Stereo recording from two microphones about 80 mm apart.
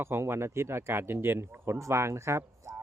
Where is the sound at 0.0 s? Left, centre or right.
Right.